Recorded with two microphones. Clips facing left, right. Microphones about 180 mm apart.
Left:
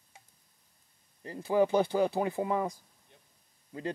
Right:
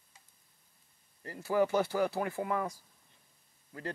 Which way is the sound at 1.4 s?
15° left (ahead or behind).